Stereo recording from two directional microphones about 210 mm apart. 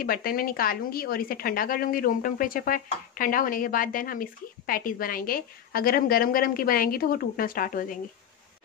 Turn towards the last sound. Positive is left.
turn(degrees=40)  # may be behind; listen again after turning